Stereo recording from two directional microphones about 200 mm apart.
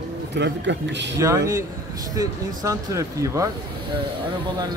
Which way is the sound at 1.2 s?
15° right (ahead or behind).